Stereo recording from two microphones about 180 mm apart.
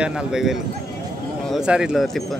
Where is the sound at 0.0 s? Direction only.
5° right (ahead or behind).